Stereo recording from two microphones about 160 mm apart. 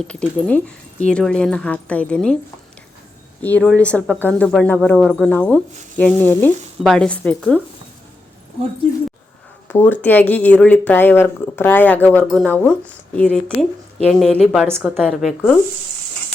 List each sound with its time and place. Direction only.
0.0 s speech: 5° left (ahead or behind)
3.4 s speech: 10° left (ahead or behind)
9.6 s speech: 10° left (ahead or behind)